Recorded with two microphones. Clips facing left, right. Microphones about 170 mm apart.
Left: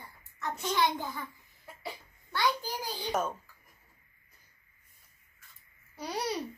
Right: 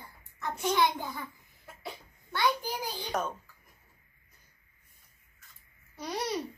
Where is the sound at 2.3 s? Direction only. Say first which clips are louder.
Right 1 dB; 15° right (ahead or behind).